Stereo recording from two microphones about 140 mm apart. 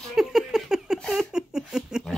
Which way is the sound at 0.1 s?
5° right (ahead or behind).